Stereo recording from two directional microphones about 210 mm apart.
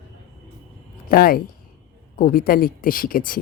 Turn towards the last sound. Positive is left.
turn(degrees=40)  # may be behind; listen again after turning